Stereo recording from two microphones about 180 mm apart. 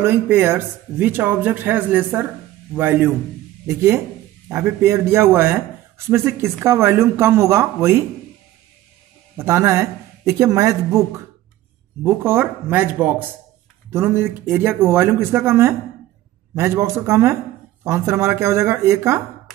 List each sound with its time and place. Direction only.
0.0 s speech: 10° right (ahead or behind)
9.4 s speech: 15° right (ahead or behind)